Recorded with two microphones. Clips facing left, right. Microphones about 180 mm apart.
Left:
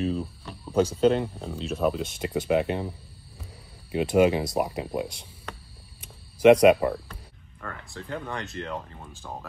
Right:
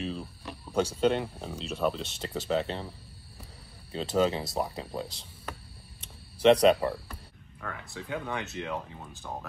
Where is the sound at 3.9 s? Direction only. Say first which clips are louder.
Left 6 dB; 15° left (ahead or behind).